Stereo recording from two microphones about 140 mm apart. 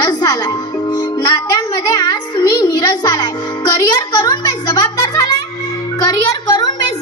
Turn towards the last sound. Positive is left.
turn(degrees=25)  # may be behind; listen again after turning